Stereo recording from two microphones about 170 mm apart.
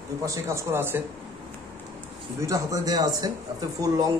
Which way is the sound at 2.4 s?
20° right (ahead or behind).